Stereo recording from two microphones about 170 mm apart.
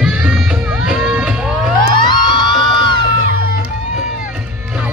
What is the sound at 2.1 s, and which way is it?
Crowd, 25° left (ahead or behind).